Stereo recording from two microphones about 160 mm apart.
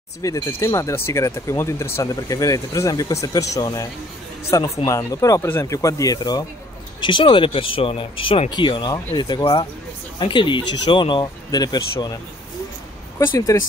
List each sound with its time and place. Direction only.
0.2 s speech: 20° left (ahead or behind)
13.5 s speech: 20° left (ahead or behind)